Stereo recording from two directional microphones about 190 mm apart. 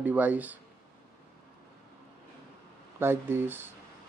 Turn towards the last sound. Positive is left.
turn(degrees=-10)  # may be behind; listen again after turning